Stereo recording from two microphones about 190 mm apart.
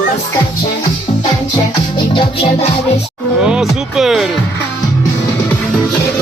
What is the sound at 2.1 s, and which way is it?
Music, 30° left (ahead or behind).